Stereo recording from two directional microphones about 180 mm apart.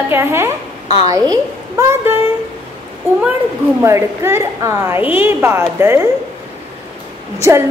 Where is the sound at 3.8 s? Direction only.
15° right (ahead or behind).